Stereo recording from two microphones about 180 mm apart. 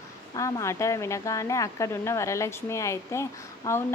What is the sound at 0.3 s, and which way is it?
A woman's voice, 15° left (ahead or behind).